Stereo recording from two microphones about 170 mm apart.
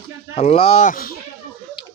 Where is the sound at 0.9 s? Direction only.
55° left (ahead or behind).